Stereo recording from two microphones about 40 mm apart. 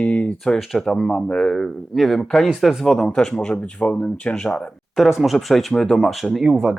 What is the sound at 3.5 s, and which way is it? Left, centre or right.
Speech, left.